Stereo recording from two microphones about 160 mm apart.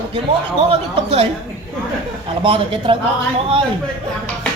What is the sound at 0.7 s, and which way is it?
Speech, 35° right (ahead or behind).